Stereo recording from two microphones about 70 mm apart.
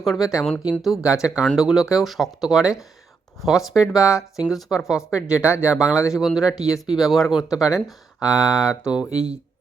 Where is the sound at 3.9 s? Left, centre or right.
Centre.